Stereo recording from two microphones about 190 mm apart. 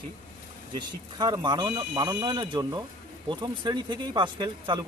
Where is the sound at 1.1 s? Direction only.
20° right (ahead or behind).